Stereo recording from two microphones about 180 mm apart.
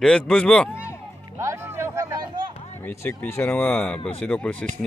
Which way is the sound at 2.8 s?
10° left (ahead or behind).